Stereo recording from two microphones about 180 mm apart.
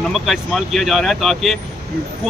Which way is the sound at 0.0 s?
Centre (ahead or behind).